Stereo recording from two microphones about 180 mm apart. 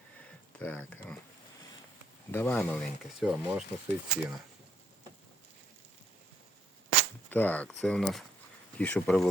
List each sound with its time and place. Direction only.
0.2 s a sound: 5° left (ahead or behind)
2.3 s speech: 10° left (ahead or behind); by 4.3 s 5° right (ahead or behind)
7.3 s speech: 10° left (ahead or behind)